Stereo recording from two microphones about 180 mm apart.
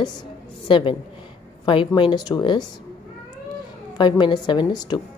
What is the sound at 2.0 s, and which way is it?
Speech, 25° left (ahead or behind).